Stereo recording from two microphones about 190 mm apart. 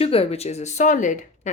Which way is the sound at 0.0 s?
30° left (ahead or behind).